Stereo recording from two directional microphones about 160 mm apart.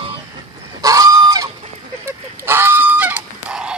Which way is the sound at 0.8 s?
20° right (ahead or behind).